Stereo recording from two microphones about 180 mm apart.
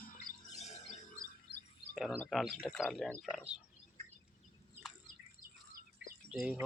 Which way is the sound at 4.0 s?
35° right (ahead or behind).